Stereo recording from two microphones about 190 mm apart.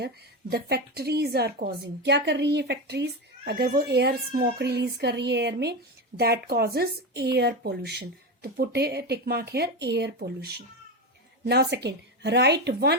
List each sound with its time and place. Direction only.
0.5 s a woman's voice: 55° right (ahead or behind)